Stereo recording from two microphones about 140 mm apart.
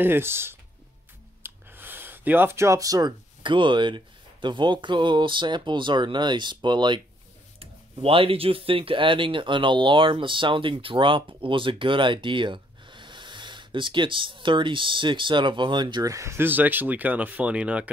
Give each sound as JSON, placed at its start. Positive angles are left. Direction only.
{"t": 0.0, "sound": "speech", "side_deg": -15}